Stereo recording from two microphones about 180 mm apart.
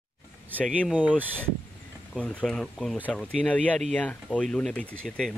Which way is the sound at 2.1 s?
5° left (ahead or behind).